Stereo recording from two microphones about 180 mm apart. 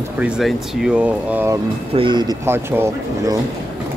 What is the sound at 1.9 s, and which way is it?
Speech, 25° right (ahead or behind).